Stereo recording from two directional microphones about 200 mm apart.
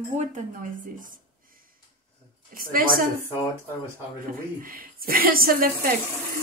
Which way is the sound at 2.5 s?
45° right (ahead or behind).